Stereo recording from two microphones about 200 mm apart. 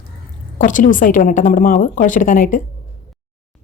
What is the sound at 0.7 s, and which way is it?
Speech, 40° left (ahead or behind).